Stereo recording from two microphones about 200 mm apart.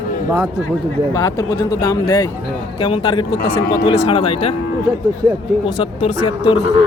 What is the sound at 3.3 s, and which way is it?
Speech, 50° left (ahead or behind).